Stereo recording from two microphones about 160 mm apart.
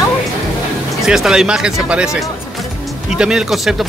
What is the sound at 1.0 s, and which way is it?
Speech, 5° right (ahead or behind).